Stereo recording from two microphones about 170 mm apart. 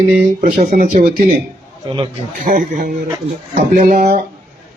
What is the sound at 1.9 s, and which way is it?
Speech, 30° right (ahead or behind).